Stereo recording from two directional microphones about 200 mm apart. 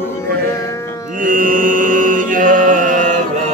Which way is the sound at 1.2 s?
40° right (ahead or behind).